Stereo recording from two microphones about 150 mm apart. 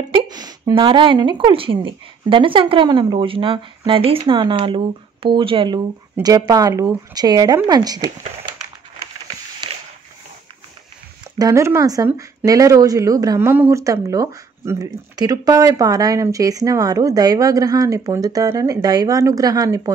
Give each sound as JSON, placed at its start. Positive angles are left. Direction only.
{"t": 0.1, "sound": "a woman's voice", "side_deg": -30}
{"t": 6.2, "sound": "speech", "side_deg": -25}
{"t": 11.3, "sound": "speech", "side_deg": -20}